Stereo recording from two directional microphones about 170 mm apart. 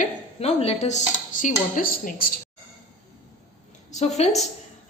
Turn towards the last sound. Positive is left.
turn(degrees=40)  # may be behind; listen again after turning